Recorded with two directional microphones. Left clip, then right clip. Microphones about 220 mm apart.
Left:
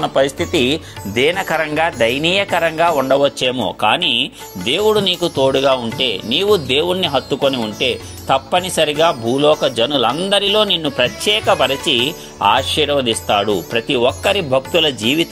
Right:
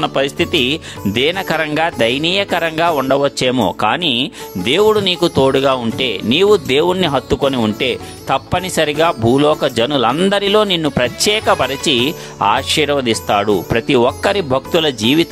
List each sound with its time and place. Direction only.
0.0 s speech: 25° right (ahead or behind); by 3.1 s 45° right (ahead or behind)
3.1 s speech: 30° right (ahead or behind)